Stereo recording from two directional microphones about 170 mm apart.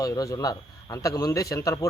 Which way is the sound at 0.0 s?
20° left (ahead or behind).